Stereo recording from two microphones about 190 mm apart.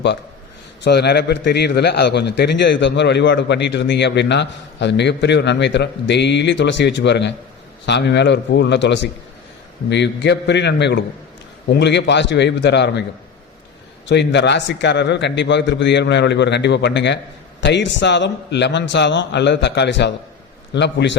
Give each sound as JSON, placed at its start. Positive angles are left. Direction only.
{"t": 0.9, "sound": "a man's voice", "side_deg": 60}
{"t": 14.1, "sound": "a man's voice", "side_deg": 65}